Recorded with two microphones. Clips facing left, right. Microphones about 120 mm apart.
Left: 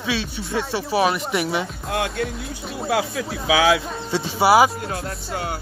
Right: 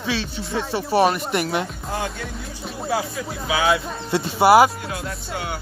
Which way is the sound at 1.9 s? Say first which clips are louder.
Left 5 dB; 65° left (ahead or behind).